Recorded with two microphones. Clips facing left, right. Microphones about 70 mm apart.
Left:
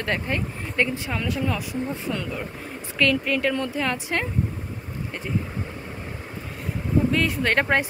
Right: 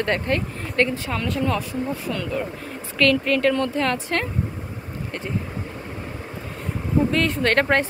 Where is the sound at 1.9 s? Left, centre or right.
Left.